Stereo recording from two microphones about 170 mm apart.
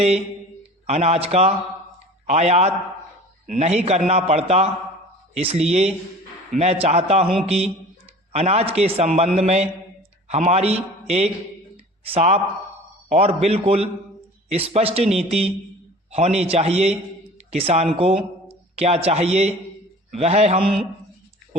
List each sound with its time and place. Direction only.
0.9 s a man's voice: 40° right (ahead or behind)